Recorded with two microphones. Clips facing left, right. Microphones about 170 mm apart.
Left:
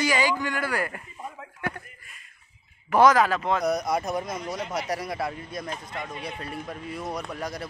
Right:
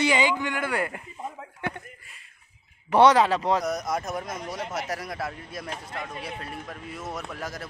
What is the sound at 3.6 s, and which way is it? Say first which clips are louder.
Speech: left 3 dB; centre (ahead or behind).